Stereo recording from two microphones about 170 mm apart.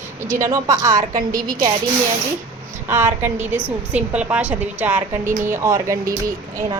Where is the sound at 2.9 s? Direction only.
15° right (ahead or behind).